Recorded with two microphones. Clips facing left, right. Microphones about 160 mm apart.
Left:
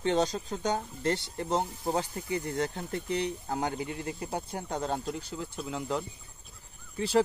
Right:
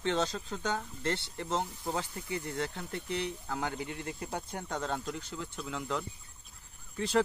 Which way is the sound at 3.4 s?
30° left (ahead or behind).